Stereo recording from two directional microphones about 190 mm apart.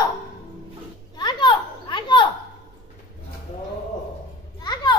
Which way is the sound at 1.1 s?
25° left (ahead or behind).